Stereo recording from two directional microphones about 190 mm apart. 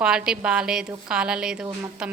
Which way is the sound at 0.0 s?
5° right (ahead or behind).